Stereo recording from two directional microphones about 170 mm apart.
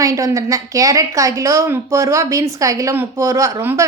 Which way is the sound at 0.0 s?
20° right (ahead or behind).